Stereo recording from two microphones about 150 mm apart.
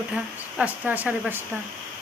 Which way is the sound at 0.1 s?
5° right (ahead or behind).